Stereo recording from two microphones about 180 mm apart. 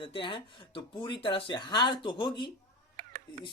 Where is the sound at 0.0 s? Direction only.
30° left (ahead or behind).